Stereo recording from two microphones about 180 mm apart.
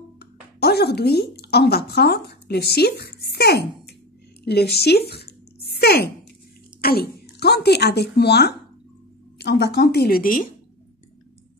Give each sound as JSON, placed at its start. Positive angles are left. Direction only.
{"t": 0.2, "sound": "a woman's voice", "side_deg": 65}
{"t": 4.5, "sound": "a sound", "side_deg": 65}
{"t": 6.8, "sound": "speech", "side_deg": 60}